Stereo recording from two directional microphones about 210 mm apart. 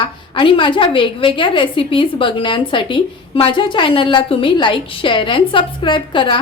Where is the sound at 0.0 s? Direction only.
25° left (ahead or behind).